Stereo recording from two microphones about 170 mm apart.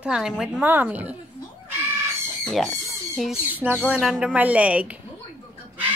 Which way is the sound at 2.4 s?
5° left (ahead or behind).